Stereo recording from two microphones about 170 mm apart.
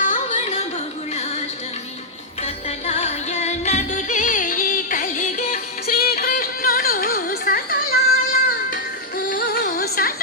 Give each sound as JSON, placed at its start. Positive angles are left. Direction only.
{"t": 0.1, "sound": "a sound", "side_deg": 45}
{"t": 2.4, "sound": "music", "side_deg": 40}
{"t": 6.0, "sound": "music", "side_deg": 65}